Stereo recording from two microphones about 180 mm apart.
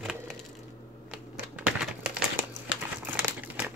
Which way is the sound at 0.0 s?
Centre (ahead or behind).